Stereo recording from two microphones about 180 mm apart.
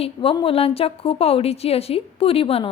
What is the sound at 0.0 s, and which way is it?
A woman's voice, 30° left (ahead or behind).